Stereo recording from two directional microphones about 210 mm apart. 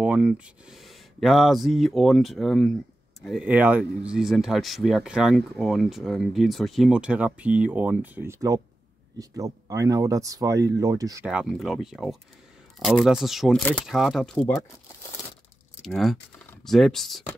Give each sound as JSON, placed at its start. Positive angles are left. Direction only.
{"t": 0.0, "sound": "speech", "side_deg": -5}
{"t": 11.2, "sound": "speech", "side_deg": -5}
{"t": 15.8, "sound": "speech", "side_deg": 0}